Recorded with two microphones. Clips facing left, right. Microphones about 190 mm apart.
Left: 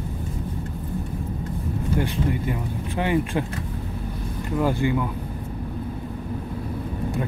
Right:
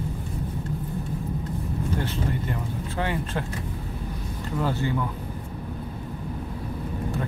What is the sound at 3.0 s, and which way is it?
Speech, 15° left (ahead or behind).